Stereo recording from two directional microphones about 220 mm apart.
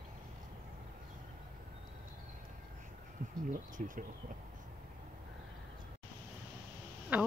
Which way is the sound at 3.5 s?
35° right (ahead or behind).